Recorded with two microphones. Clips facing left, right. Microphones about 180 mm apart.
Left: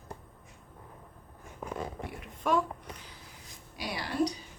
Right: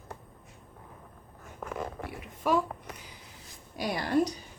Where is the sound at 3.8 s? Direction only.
45° right (ahead or behind).